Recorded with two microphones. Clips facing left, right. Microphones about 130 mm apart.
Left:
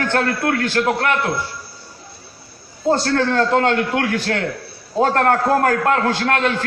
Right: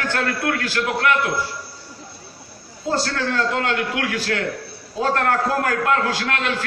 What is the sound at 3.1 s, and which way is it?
A man's voice, 40° left (ahead or behind).